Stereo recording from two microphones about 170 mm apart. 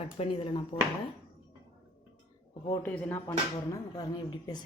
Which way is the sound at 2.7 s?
15° left (ahead or behind).